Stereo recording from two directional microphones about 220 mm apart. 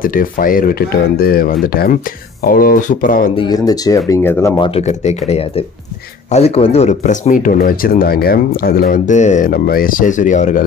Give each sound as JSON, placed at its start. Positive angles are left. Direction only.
{"t": 0.0, "sound": "speech", "side_deg": 40}
{"t": 3.3, "sound": "speech", "side_deg": 15}
{"t": 4.6, "sound": "speech", "side_deg": 25}